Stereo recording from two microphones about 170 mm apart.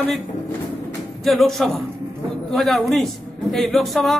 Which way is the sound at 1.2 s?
Centre (ahead or behind).